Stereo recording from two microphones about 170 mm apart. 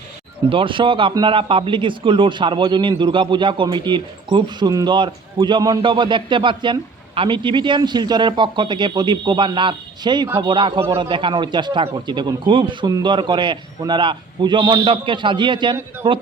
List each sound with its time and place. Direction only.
0.5 s speech: 30° right (ahead or behind)